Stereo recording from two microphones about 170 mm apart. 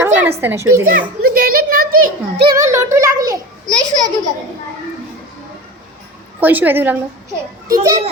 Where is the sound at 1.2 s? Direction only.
60° right (ahead or behind).